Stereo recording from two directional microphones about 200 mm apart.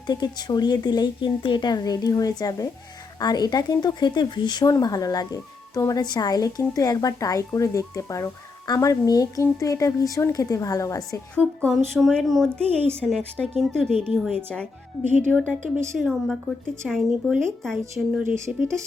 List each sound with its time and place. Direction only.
0.1 s speech: 20° left (ahead or behind)
11.9 s a woman's voice: centre (ahead or behind)
18.2 s speech: 10° right (ahead or behind)